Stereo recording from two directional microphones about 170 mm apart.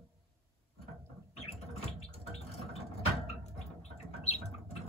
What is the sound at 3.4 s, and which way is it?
Squawk, 40° left (ahead or behind).